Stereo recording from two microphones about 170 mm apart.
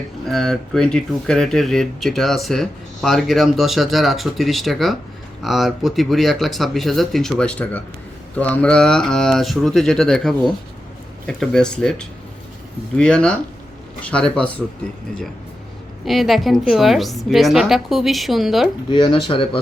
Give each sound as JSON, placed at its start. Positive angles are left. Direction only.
{"t": 0.3, "sound": "speech", "side_deg": 0}
{"t": 16.0, "sound": "speech", "side_deg": 0}
{"t": 18.9, "sound": "speech", "side_deg": 30}